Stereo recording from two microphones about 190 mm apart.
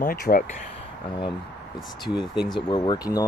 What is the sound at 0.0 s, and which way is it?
Speech, 50° left (ahead or behind).